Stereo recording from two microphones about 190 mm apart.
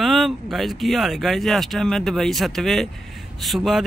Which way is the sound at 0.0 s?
Centre (ahead or behind).